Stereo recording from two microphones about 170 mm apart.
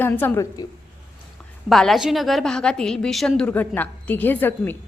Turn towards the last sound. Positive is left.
turn(degrees=10)  # may be behind; listen again after turning